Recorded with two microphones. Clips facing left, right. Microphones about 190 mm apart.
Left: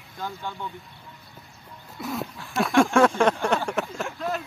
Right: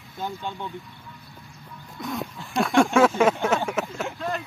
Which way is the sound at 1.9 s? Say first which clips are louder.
Even; 5° left (ahead or behind).